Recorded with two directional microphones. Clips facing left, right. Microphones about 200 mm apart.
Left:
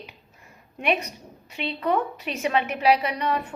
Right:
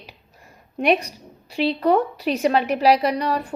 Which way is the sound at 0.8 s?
35° right (ahead or behind).